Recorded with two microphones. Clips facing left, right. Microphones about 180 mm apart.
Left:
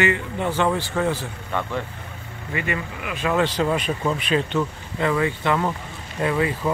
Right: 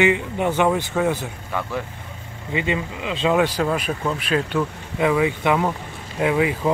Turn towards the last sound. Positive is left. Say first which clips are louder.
# right 3 dB
turn(degrees=-10)  # may be behind; listen again after turning